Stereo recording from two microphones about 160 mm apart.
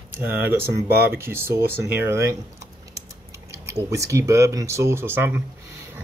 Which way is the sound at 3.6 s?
20° right (ahead or behind).